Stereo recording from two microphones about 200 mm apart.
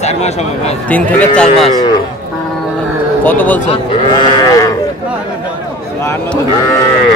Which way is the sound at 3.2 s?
10° left (ahead or behind).